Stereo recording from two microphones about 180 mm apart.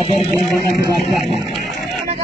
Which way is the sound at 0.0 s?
30° left (ahead or behind).